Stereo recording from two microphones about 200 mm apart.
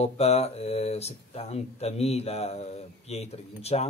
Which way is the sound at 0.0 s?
30° left (ahead or behind).